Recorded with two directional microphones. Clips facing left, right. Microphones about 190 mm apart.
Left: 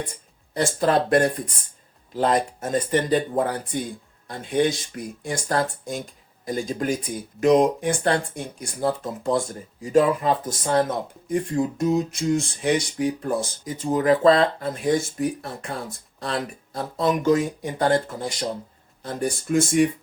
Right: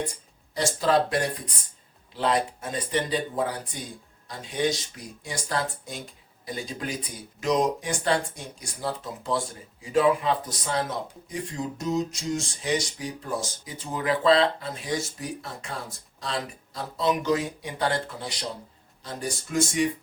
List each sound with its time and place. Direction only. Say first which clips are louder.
0.5 s speech: left 2 dB; 55° left (ahead or behind)